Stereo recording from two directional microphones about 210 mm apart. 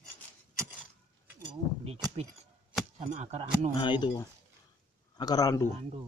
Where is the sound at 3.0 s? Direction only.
30° right (ahead or behind).